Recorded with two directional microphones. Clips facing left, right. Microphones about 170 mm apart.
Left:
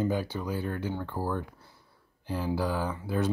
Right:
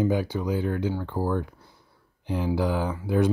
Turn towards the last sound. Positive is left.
turn(degrees=-15)  # may be behind; listen again after turning